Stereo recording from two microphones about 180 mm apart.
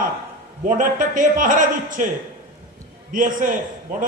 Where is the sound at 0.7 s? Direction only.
45° right (ahead or behind).